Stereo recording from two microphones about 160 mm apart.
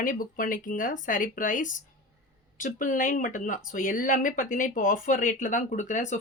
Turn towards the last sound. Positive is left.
turn(degrees=50)  # may be behind; listen again after turning